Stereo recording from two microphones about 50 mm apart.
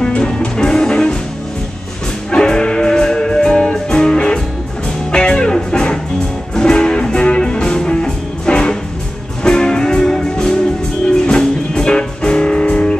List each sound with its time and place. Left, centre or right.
0.0 s music: left
2.3 s music: centre